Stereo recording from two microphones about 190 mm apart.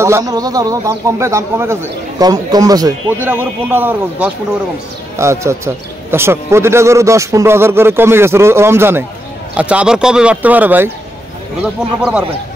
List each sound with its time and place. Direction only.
0.0 s a man's voice: 15° right (ahead or behind)
12.0 s speech: 5° right (ahead or behind)